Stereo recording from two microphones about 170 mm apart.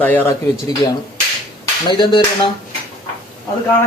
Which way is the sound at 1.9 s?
25° left (ahead or behind).